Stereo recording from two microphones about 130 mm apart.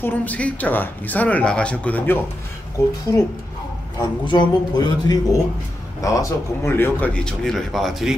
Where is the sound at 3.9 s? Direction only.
35° left (ahead or behind).